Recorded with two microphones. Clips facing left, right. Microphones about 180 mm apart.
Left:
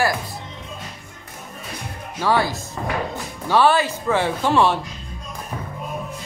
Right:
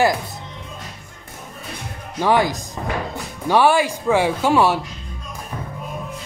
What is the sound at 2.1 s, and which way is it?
Speech, 15° right (ahead or behind).